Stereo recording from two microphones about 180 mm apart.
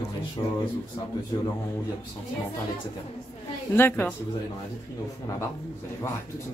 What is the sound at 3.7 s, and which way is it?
Speech, 10° left (ahead or behind).